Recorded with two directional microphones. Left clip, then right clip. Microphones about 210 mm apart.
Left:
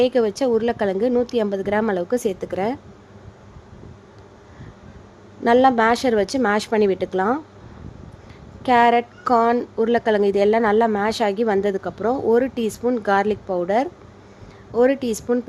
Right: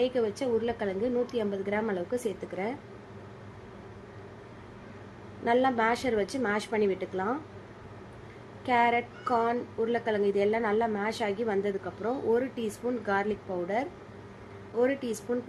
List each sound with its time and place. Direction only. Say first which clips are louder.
0.0 s a woman's voice: left 10 dB; 55° left (ahead or behind)
5.5 s a woman's voice: left 10 dB; 55° left (ahead or behind)
8.6 s a woman's voice: left 10 dB; 55° left (ahead or behind)